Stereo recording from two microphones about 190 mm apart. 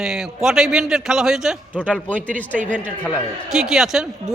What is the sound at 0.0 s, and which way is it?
A man's voice, centre (ahead or behind).